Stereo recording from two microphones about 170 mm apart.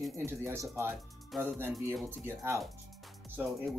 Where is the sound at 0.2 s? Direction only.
15° right (ahead or behind).